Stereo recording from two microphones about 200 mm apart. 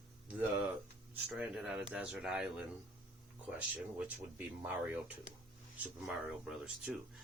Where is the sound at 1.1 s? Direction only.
5° right (ahead or behind).